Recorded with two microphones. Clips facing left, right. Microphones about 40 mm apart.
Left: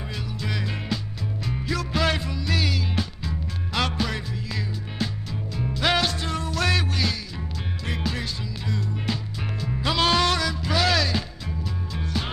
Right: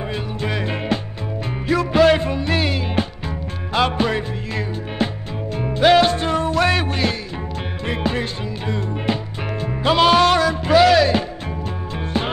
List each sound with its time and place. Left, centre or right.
0.1 s music: right